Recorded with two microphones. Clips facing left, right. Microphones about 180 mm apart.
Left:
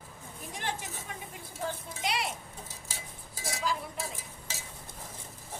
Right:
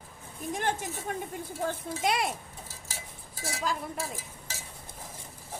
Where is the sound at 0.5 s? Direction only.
50° right (ahead or behind).